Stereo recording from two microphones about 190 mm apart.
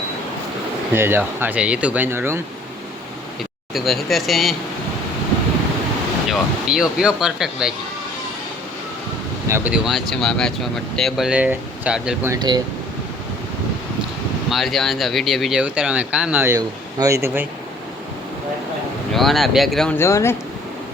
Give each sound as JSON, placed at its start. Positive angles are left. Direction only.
{"t": 0.9, "sound": "speech", "side_deg": -10}
{"t": 3.8, "sound": "speech", "side_deg": 0}
{"t": 6.2, "sound": "speech", "side_deg": 0}
{"t": 9.5, "sound": "speech", "side_deg": -5}
{"t": 12.3, "sound": "speech", "side_deg": -20}
{"t": 14.5, "sound": "speech", "side_deg": 0}
{"t": 19.1, "sound": "speech", "side_deg": 0}
{"t": 20.0, "sound": "speech", "side_deg": 15}